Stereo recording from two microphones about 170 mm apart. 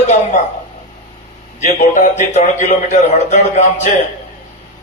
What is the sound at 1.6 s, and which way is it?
A man's voice, 45° left (ahead or behind).